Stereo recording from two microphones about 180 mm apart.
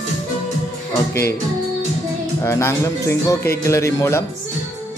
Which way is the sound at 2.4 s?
15° left (ahead or behind).